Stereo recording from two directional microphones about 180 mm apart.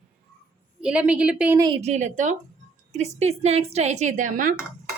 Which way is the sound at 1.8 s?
40° right (ahead or behind).